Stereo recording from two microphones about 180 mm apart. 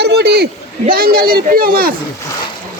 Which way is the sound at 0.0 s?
65° right (ahead or behind).